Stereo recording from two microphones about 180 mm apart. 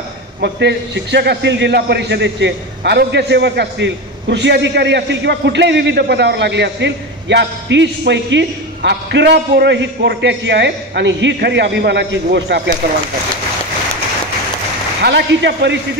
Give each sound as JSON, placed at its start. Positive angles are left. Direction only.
{"t": 0.4, "sound": "a man's voice", "side_deg": -75}
{"t": 15.0, "sound": "a man's voice", "side_deg": -70}